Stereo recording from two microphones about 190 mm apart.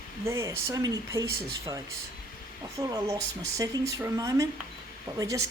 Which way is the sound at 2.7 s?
20° right (ahead or behind).